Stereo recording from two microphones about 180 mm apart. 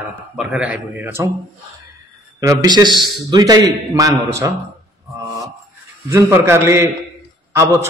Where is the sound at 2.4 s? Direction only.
20° right (ahead or behind).